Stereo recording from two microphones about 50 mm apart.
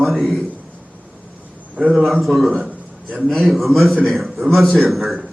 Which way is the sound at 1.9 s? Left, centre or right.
Centre.